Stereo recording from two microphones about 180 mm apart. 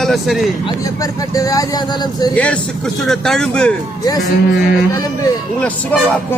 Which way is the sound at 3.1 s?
Centre (ahead or behind).